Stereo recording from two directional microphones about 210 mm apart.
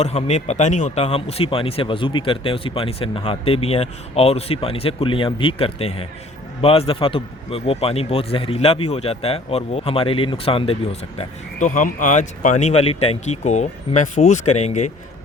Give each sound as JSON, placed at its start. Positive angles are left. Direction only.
{"t": 0.0, "sound": "speech", "side_deg": 30}
{"t": 11.2, "sound": "speech", "side_deg": 35}